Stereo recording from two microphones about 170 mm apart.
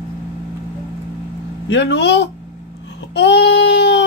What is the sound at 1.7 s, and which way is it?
Speech, 90° left.